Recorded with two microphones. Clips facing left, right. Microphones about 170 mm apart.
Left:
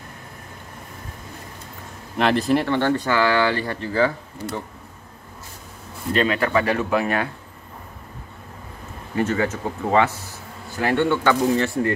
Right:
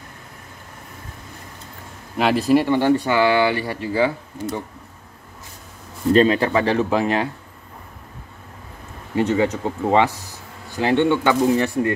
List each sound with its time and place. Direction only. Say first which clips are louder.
2.1 s speech: right 2 dB; 5° right (ahead or behind)
6.1 s speech: right 4 dB; 30° right (ahead or behind)
9.1 s speech: right 3 dB; 20° right (ahead or behind)